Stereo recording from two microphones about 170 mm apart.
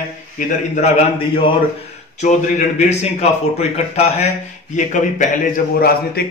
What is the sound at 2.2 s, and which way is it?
A man's voice, 40° left (ahead or behind).